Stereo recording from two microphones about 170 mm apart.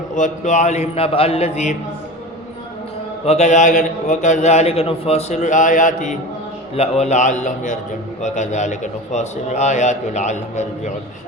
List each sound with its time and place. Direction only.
0.2 s a man's voice: 45° left (ahead or behind)
3.2 s a man's voice: 40° left (ahead or behind)